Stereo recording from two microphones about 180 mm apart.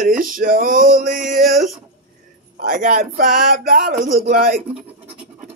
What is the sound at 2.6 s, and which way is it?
Speech, 45° right (ahead or behind).